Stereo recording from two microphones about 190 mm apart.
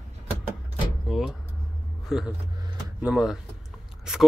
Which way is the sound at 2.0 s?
5° right (ahead or behind).